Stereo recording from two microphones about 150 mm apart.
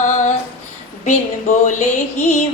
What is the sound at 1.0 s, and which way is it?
Female singing, 55° left (ahead or behind).